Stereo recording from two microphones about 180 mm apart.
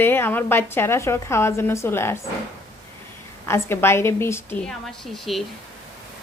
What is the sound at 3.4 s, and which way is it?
A woman's voice, 15° left (ahead or behind).